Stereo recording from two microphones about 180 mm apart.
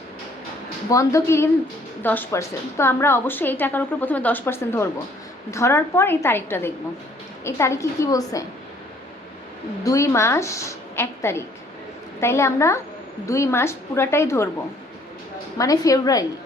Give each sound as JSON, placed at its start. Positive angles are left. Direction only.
{"t": 0.9, "sound": "a woman's voice", "side_deg": 15}
{"t": 9.8, "sound": "a woman's voice", "side_deg": 15}
{"t": 15.5, "sound": "a woman's voice", "side_deg": 20}